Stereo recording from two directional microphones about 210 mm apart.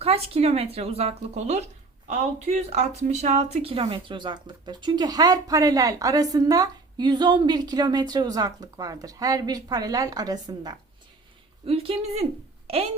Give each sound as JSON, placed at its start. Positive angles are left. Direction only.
{"t": 0.0, "sound": "a child's voice", "side_deg": -30}